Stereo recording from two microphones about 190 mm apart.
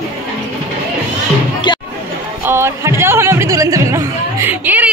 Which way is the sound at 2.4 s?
15° right (ahead or behind).